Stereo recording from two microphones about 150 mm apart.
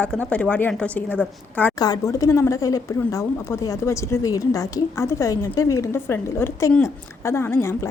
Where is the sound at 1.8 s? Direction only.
25° left (ahead or behind).